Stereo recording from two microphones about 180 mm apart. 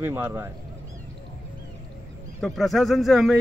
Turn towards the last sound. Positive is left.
turn(degrees=0)  # may be behind; listen again after turning